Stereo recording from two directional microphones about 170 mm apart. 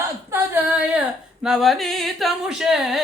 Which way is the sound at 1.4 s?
Centre (ahead or behind).